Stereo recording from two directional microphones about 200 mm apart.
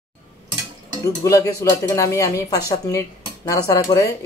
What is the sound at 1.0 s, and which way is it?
Speech, 15° left (ahead or behind).